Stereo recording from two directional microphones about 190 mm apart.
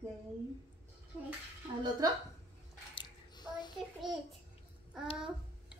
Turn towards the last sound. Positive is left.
turn(degrees=0)  # may be behind; listen again after turning